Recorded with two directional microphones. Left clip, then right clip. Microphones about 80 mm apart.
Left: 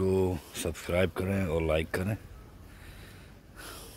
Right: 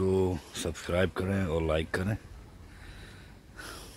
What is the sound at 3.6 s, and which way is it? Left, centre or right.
Snort, right.